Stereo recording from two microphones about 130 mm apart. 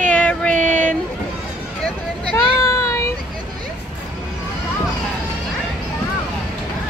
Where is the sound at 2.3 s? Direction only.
20° left (ahead or behind).